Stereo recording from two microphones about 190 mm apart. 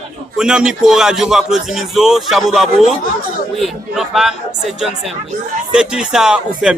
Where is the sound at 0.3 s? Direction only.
5° right (ahead or behind).